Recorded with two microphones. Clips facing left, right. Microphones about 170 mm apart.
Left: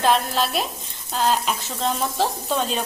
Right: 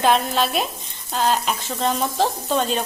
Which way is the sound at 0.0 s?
Centre (ahead or behind).